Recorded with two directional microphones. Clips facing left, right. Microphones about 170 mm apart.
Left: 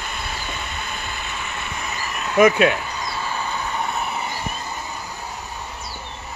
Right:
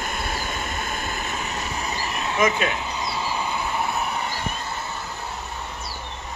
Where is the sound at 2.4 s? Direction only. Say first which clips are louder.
Left 8 dB; 55° left (ahead or behind).